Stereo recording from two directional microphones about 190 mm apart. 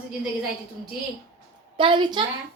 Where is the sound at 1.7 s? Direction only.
25° right (ahead or behind).